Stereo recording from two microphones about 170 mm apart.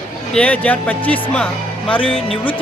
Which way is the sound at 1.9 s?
30° left (ahead or behind).